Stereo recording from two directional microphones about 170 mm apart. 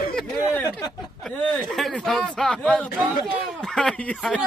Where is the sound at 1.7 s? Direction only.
Centre (ahead or behind).